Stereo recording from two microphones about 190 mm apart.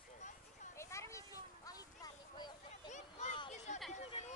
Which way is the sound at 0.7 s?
15° left (ahead or behind).